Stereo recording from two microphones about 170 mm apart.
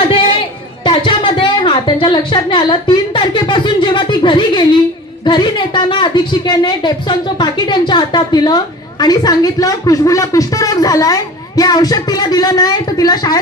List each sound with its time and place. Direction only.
0.8 s a woman's voice: 30° left (ahead or behind)